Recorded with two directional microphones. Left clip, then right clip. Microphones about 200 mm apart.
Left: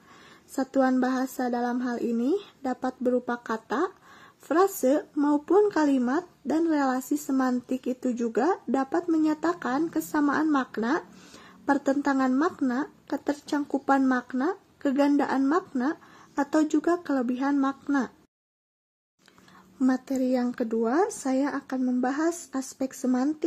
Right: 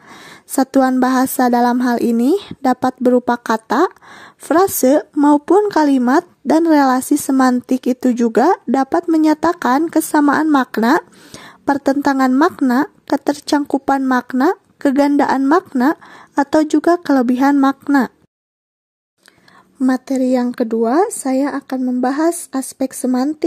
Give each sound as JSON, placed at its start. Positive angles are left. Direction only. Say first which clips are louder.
{"t": 0.1, "sound": "speech", "louder": "right 15 dB", "side_deg": -50}
{"t": 19.9, "sound": "speech", "louder": "right 11 dB", "side_deg": -35}